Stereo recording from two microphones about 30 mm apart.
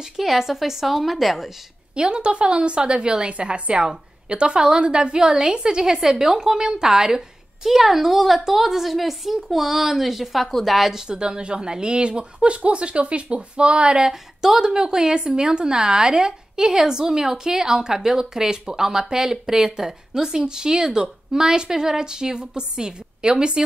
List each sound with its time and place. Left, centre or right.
0.2 s a woman's voice: centre
2.0 s a woman's voice: right; by 10.9 s centre
10.9 s speech: right
14.4 s a woman's voice: centre